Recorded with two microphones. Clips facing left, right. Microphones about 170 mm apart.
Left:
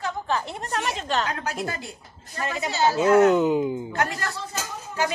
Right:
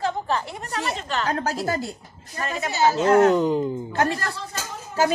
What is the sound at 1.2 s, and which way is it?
Speech, 40° right (ahead or behind).